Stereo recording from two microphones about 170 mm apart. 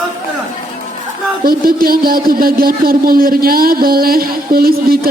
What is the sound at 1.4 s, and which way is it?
Speech, 60° right (ahead or behind).